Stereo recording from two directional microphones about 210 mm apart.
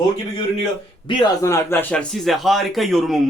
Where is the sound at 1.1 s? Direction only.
20° left (ahead or behind).